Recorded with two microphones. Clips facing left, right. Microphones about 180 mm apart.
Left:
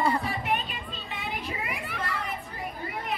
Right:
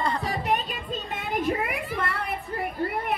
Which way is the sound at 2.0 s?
60° right (ahead or behind).